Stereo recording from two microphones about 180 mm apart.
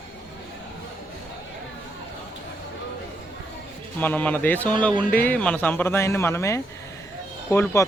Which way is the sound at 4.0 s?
10° left (ahead or behind).